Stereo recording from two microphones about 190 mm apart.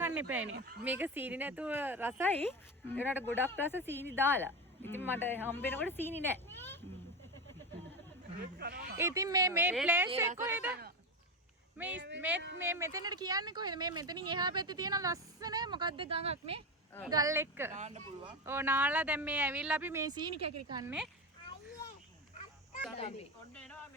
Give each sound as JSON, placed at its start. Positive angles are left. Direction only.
{"t": 0.0, "sound": "a sound", "side_deg": -10}
{"t": 0.9, "sound": "speech", "side_deg": -10}
{"t": 2.2, "sound": "speech", "side_deg": 10}
{"t": 8.4, "sound": "speech", "side_deg": -60}
{"t": 9.0, "sound": "speech", "side_deg": -15}
{"t": 11.9, "sound": "speech", "side_deg": -70}
{"t": 12.5, "sound": "speech", "side_deg": -10}
{"t": 17.1, "sound": "speech", "side_deg": -15}
{"t": 17.7, "sound": "speech", "side_deg": -35}
{"t": 18.4, "sound": "speech", "side_deg": -10}
{"t": 23.0, "sound": "speech", "side_deg": 35}